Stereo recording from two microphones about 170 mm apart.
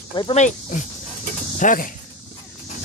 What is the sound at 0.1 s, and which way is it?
Speech, 25° left (ahead or behind).